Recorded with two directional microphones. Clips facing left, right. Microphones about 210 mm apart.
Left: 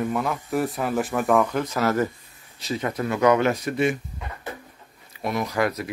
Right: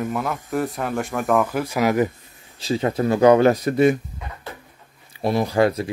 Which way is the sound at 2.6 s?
30° right (ahead or behind).